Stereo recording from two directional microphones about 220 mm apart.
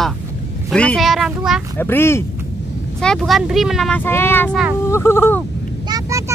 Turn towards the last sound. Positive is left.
turn(degrees=-15)  # may be behind; listen again after turning